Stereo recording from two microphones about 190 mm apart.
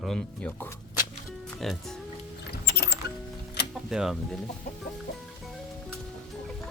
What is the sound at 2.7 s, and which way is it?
Music, 55° left (ahead or behind).